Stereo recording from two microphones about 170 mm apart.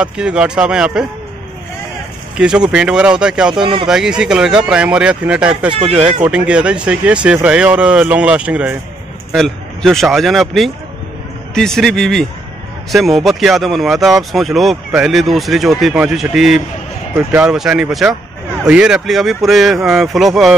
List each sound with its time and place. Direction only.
0.0 s speech: 5° right (ahead or behind)
2.3 s speech: 5° right (ahead or behind)
5.7 s speech: 40° right (ahead or behind)
6.2 s speech: 5° right (ahead or behind)